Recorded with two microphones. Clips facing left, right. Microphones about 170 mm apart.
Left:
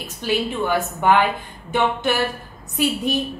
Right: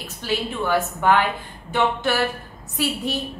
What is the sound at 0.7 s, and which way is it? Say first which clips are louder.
A woman's voice: even; 15° left (ahead or behind).